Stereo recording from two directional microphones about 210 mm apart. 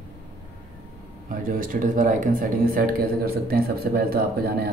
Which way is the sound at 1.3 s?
40° right (ahead or behind).